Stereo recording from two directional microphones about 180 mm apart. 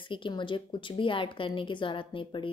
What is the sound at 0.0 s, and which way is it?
A woman's voice, 25° left (ahead or behind).